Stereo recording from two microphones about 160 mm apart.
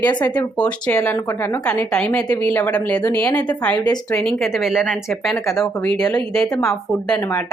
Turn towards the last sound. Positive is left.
turn(degrees=5)  # may be behind; listen again after turning